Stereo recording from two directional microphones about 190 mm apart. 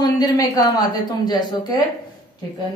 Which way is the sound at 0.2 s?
20° left (ahead or behind).